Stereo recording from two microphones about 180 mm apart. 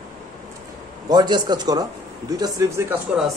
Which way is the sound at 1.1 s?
25° right (ahead or behind).